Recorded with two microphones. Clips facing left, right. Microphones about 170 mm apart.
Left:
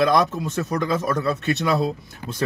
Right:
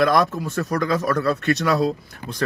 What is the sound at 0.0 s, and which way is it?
A man's voice, 20° left (ahead or behind).